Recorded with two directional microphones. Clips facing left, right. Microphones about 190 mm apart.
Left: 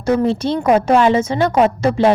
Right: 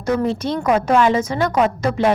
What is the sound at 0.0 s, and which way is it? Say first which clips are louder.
A woman's voice: left 4 dB; 30° left (ahead or behind).